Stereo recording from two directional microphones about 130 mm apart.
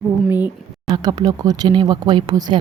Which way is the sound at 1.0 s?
30° right (ahead or behind).